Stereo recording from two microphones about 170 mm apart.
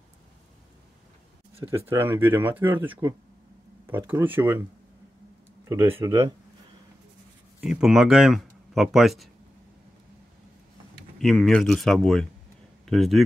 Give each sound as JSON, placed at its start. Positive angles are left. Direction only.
{"t": 1.9, "sound": "speech", "side_deg": -15}
{"t": 5.7, "sound": "speech", "side_deg": -15}
{"t": 7.6, "sound": "speech", "side_deg": -5}
{"t": 11.1, "sound": "speech", "side_deg": 0}